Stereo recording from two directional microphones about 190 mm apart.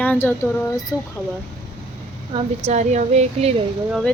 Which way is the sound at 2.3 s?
35° right (ahead or behind).